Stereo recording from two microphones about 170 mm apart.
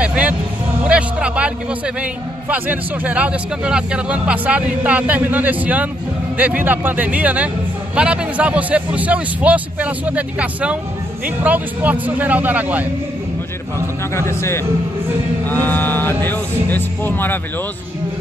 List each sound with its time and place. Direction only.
0.0 s music: 5° right (ahead or behind)
2.5 s speech: 10° right (ahead or behind)
14.1 s speech: 15° left (ahead or behind)